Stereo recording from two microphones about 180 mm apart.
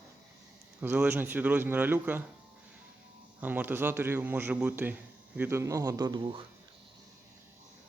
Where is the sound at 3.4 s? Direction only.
10° right (ahead or behind).